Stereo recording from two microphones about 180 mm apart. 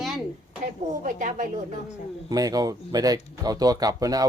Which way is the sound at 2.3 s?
20° right (ahead or behind).